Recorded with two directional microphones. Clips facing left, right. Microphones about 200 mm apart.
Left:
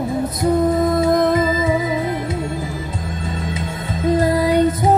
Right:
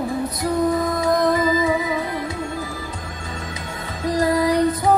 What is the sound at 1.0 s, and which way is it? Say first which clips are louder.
Music: left 3 dB; 25° left (ahead or behind).